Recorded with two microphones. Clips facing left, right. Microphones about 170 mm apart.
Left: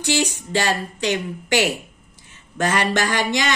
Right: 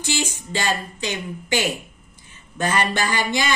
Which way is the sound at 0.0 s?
70° left (ahead or behind).